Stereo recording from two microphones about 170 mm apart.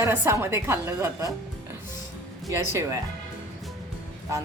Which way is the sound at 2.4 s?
20° right (ahead or behind).